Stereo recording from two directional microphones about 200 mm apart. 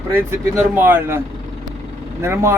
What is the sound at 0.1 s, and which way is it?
Speech, 10° right (ahead or behind).